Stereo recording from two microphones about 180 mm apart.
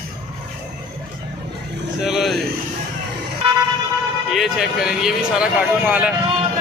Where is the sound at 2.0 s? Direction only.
Centre (ahead or behind).